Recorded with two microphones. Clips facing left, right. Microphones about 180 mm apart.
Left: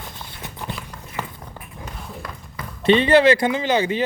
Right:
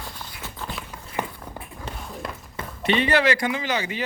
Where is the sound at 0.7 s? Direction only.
10° right (ahead or behind).